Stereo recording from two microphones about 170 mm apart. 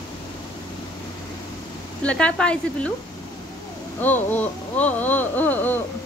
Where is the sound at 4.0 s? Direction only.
10° left (ahead or behind).